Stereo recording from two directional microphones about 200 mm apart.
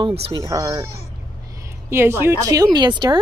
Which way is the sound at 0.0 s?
25° right (ahead or behind).